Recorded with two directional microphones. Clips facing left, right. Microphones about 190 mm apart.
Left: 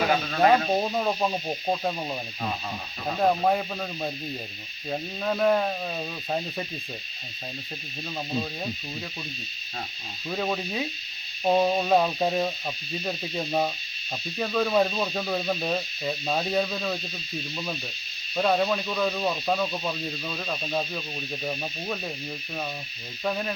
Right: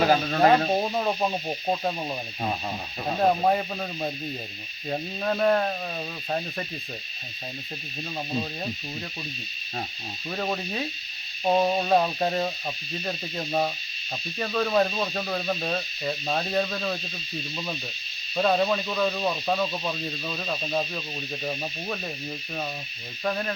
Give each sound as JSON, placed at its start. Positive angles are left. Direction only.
{"t": 0.1, "sound": "snake", "side_deg": -35}
{"t": 0.7, "sound": "speech", "side_deg": -5}
{"t": 3.2, "sound": "speech", "side_deg": -5}
{"t": 8.3, "sound": "speech", "side_deg": -5}
{"t": 10.2, "sound": "speech", "side_deg": 0}
{"t": 18.3, "sound": "speech", "side_deg": 0}
{"t": 23.2, "sound": "speech", "side_deg": 5}